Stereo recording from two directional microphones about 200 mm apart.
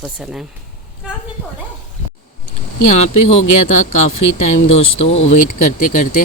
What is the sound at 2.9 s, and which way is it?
Speech, 35° left (ahead or behind).